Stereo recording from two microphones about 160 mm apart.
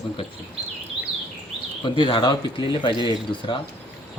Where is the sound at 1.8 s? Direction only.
30° left (ahead or behind).